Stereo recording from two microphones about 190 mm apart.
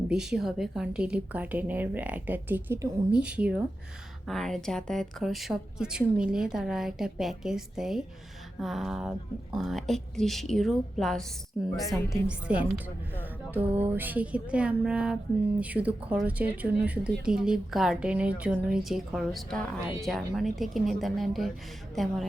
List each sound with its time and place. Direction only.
0.1 s a woman's voice: 5° right (ahead or behind)